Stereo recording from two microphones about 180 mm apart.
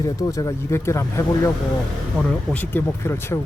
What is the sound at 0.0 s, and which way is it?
Speech, 20° left (ahead or behind).